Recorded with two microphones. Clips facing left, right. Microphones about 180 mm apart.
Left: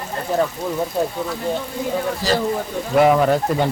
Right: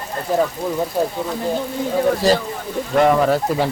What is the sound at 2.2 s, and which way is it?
Speech, 60° right (ahead or behind).